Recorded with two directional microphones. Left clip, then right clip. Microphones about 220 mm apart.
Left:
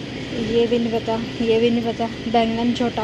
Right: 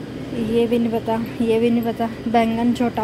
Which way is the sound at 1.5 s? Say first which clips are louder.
Left 1 dB; 25° right (ahead or behind).